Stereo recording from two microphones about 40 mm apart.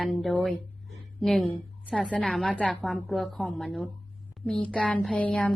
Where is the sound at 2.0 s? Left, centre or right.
Left.